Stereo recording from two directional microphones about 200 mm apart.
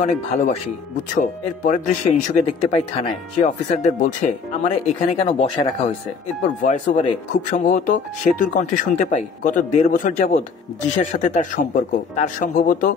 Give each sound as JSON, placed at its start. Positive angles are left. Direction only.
{"t": 0.0, "sound": "speech", "side_deg": 35}